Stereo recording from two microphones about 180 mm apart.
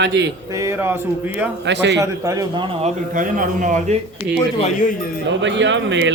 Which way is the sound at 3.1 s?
50° right (ahead or behind).